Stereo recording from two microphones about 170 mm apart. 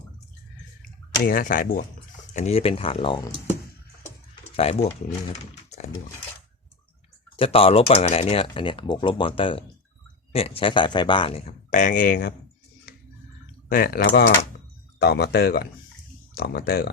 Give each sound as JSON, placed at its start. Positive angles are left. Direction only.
{"t": 1.2, "sound": "speech", "side_deg": 55}
{"t": 2.3, "sound": "speech", "side_deg": 40}
{"t": 4.5, "sound": "speech", "side_deg": 35}
{"t": 7.3, "sound": "speech", "side_deg": 35}
{"t": 13.7, "sound": "speech", "side_deg": 60}